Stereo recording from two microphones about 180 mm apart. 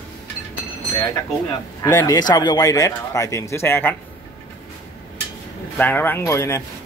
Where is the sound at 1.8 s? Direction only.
15° left (ahead or behind).